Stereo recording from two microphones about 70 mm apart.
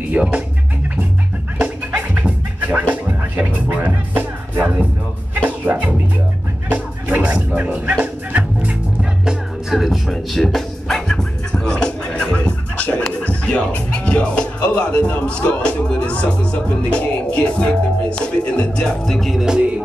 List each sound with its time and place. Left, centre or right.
0.1 s speech: centre
1.6 s music: right
9.2 s music: centre